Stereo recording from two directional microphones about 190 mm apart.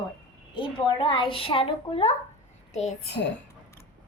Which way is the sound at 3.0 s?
60° left (ahead or behind).